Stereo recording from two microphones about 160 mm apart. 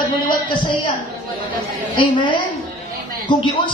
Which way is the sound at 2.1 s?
30° left (ahead or behind).